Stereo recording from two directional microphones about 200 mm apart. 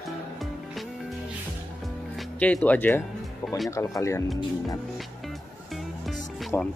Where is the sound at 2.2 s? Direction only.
5° left (ahead or behind).